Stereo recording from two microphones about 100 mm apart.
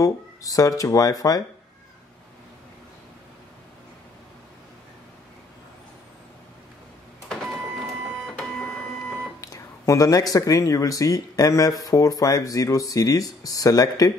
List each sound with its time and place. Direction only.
0.0 s speech: 35° left (ahead or behind)
7.2 s printer: 5° left (ahead or behind)
9.4 s speech: 35° left (ahead or behind)